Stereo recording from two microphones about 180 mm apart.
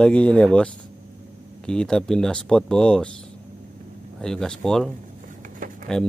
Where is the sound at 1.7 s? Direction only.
5° left (ahead or behind).